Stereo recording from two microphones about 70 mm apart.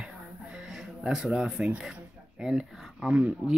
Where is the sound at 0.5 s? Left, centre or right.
Centre.